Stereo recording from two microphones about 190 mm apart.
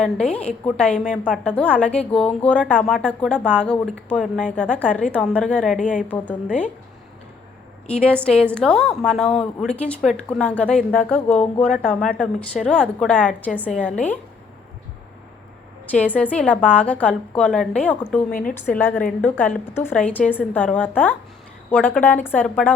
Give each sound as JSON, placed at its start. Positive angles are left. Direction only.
{"t": 0.0, "sound": "a woman's voice", "side_deg": 5}
{"t": 5.8, "sound": "a woman's voice", "side_deg": 40}
{"t": 6.1, "sound": "a woman's voice", "side_deg": 10}
{"t": 7.9, "sound": "a woman's voice", "side_deg": 5}
{"t": 16.1, "sound": "a woman's voice", "side_deg": 5}
{"t": 18.3, "sound": "a woman's voice", "side_deg": 45}
{"t": 18.7, "sound": "a woman's voice", "side_deg": 10}